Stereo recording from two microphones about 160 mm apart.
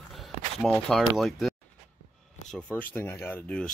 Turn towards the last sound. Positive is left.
turn(degrees=10)  # may be behind; listen again after turning